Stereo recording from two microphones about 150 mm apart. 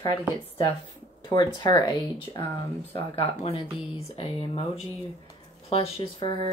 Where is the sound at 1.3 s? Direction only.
30° left (ahead or behind).